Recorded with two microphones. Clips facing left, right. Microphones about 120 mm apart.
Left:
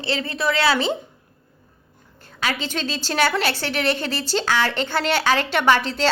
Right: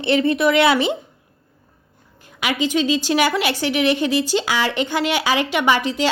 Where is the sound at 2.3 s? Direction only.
15° right (ahead or behind).